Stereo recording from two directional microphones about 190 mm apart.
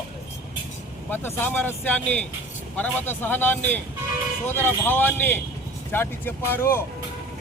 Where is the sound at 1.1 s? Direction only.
10° left (ahead or behind).